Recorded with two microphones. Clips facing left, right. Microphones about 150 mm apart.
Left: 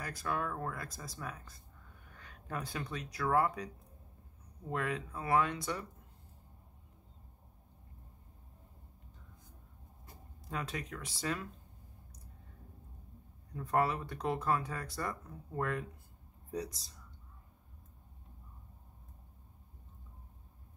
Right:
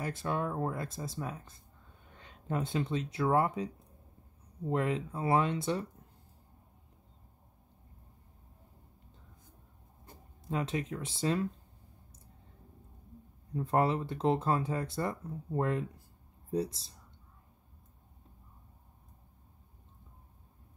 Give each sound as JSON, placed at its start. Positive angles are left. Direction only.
{"t": 0.0, "sound": "speech", "side_deg": -25}
{"t": 10.5, "sound": "speech", "side_deg": -25}
{"t": 13.5, "sound": "speech", "side_deg": -25}